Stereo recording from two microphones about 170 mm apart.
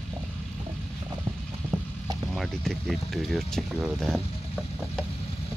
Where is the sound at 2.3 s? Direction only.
Centre (ahead or behind).